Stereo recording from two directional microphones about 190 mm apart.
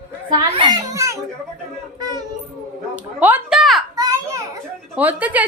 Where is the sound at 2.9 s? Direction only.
10° right (ahead or behind).